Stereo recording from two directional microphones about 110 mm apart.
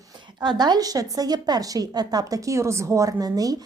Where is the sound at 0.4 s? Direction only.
40° right (ahead or behind).